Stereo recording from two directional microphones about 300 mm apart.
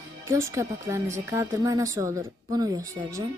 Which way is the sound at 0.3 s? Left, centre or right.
Centre.